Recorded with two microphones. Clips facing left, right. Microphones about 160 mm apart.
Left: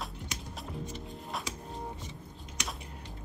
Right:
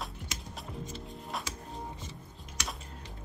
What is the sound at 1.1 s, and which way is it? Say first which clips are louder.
Music: even; centre (ahead or behind).